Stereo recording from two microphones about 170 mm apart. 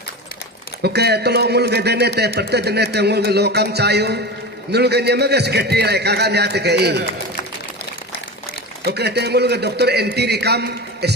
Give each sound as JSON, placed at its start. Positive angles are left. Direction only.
{"t": 0.8, "sound": "a man's voice", "side_deg": -75}
{"t": 8.8, "sound": "a man's voice", "side_deg": -75}